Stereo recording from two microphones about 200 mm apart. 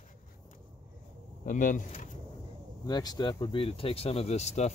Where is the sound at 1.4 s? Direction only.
40° left (ahead or behind).